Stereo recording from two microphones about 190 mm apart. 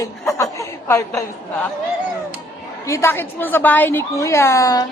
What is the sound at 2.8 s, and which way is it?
A woman's voice, 15° left (ahead or behind).